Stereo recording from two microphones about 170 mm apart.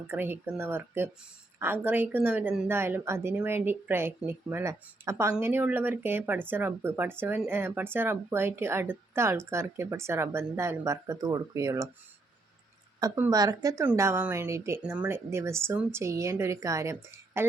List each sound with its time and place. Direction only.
0.1 s speech: 10° right (ahead or behind)
13.0 s speech: 20° right (ahead or behind)